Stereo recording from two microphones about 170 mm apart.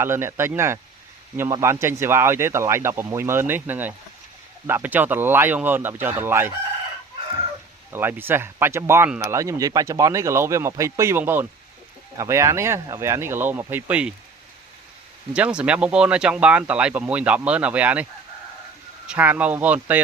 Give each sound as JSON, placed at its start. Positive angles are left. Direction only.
{"t": 0.0, "sound": "speech", "side_deg": -15}
{"t": 7.9, "sound": "speech", "side_deg": -10}
{"t": 15.3, "sound": "speech", "side_deg": -5}
{"t": 19.0, "sound": "speech", "side_deg": -10}